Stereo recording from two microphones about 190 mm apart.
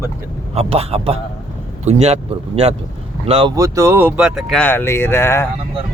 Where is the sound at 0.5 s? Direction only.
30° right (ahead or behind).